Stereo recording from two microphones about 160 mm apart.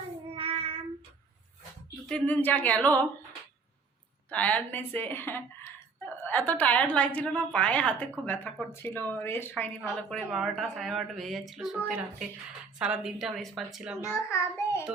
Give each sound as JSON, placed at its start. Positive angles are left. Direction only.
{"t": 0.3, "sound": "child singing", "side_deg": -35}
{"t": 2.0, "sound": "a woman's voice", "side_deg": 10}
{"t": 4.3, "sound": "a woman's voice", "side_deg": 10}
{"t": 12.8, "sound": "a woman's voice", "side_deg": -5}
{"t": 14.3, "sound": "child singing", "side_deg": 15}